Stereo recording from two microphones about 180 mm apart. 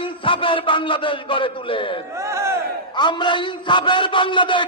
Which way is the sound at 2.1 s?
15° right (ahead or behind).